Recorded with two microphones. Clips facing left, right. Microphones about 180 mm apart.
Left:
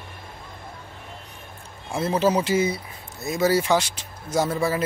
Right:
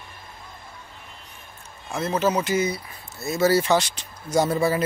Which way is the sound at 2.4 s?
25° left (ahead or behind).